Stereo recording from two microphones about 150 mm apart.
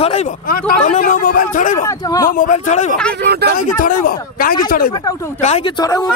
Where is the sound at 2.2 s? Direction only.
65° left (ahead or behind).